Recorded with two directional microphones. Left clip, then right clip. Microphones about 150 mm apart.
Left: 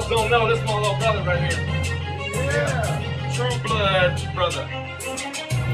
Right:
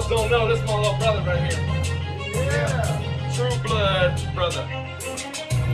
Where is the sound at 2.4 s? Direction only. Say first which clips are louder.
Left 2 dB; 40° right (ahead or behind).